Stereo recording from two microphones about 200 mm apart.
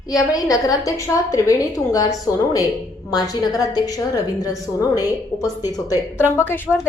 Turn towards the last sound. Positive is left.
turn(degrees=10)  # may be behind; listen again after turning